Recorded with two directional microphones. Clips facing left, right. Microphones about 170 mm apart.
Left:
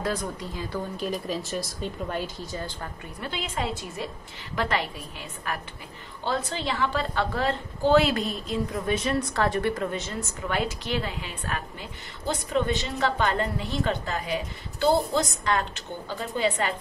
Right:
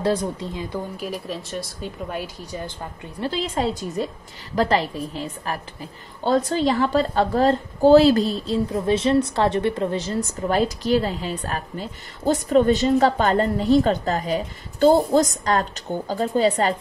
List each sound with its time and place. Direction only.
0.0 s speech: 30° right (ahead or behind)
0.9 s speech: 5° right (ahead or behind)
3.2 s a woman's voice: 35° right (ahead or behind)